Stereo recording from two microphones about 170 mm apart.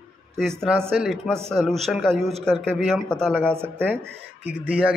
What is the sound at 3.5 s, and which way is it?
Speech, 10° right (ahead or behind).